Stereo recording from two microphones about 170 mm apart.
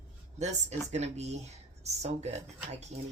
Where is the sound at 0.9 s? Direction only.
40° right (ahead or behind).